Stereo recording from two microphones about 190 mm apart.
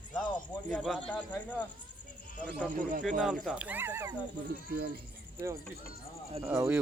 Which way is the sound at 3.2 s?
Centre (ahead or behind).